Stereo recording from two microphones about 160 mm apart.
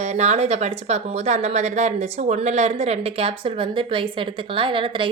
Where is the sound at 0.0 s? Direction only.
45° right (ahead or behind).